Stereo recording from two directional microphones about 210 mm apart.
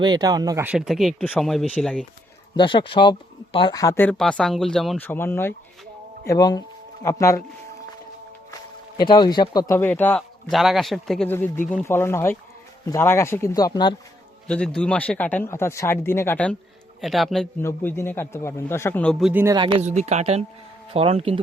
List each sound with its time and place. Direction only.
0.0 s speech: 20° right (ahead or behind); by 2.0 s 5° left (ahead or behind)
2.6 s speech: 25° left (ahead or behind)
9.0 s speech: 20° left (ahead or behind)
14.4 s speech: 5° left (ahead or behind)
17.6 s speech: 10° left (ahead or behind)
19.3 s speech: 10° right (ahead or behind)
19.5 s speech: 25° right (ahead or behind)